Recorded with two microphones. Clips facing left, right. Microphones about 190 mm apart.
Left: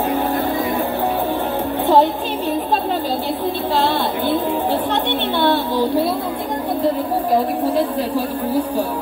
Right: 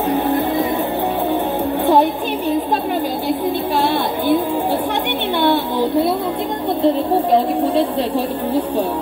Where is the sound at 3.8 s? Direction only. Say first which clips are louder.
Right 1 dB; 15° right (ahead or behind).